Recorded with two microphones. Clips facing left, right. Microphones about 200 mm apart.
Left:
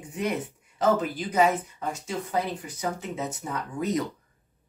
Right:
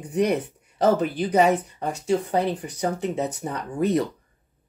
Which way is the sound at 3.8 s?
65° right (ahead or behind).